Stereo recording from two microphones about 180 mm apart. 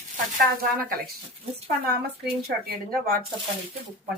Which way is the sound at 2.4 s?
55° right (ahead or behind).